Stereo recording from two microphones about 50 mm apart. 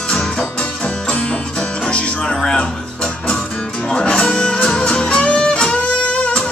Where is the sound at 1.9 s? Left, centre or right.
Centre.